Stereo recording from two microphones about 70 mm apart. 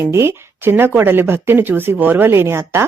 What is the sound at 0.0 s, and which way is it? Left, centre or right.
Speech, right.